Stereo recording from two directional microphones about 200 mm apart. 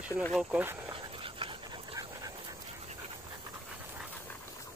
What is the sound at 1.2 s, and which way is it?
Dog, 25° right (ahead or behind).